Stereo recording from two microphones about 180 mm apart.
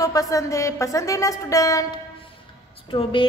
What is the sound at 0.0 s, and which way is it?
A woman's voice, 20° left (ahead or behind).